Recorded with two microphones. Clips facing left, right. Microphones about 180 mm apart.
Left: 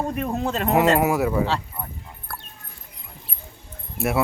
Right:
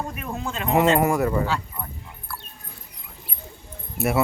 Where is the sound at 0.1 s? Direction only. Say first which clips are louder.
Left 6 dB; 40° left (ahead or behind).